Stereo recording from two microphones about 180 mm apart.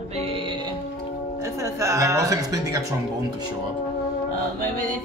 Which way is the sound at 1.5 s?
15° right (ahead or behind).